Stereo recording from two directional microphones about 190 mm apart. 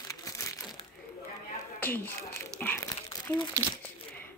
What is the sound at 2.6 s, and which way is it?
Crumpling, 15° left (ahead or behind).